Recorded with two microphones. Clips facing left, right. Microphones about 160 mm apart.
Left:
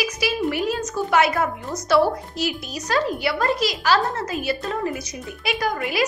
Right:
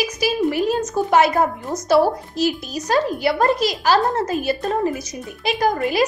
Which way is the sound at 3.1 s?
45° right (ahead or behind).